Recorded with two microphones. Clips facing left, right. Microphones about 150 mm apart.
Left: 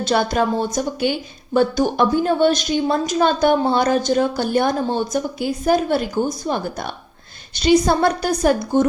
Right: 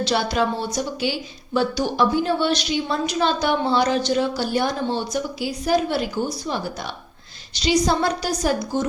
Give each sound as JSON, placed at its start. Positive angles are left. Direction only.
{"t": 0.0, "sound": "a woman's voice", "side_deg": 50}